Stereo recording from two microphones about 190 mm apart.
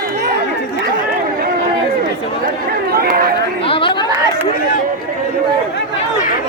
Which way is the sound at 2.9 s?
50° right (ahead or behind).